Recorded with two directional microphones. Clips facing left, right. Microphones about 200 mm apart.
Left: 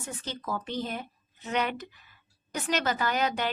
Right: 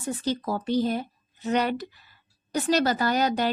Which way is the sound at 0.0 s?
35° right (ahead or behind).